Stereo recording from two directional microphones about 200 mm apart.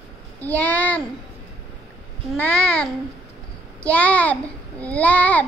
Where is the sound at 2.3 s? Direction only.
5° left (ahead or behind).